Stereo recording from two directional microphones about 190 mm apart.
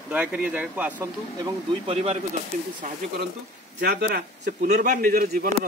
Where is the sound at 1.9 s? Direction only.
35° right (ahead or behind).